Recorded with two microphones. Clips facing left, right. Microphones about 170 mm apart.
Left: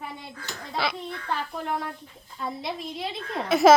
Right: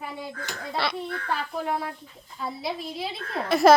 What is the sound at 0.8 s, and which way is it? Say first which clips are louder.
Speech: even; 5° right (ahead or behind).